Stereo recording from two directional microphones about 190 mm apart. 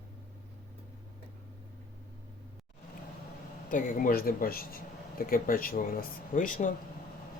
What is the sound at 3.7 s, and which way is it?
Speech, 45° left (ahead or behind).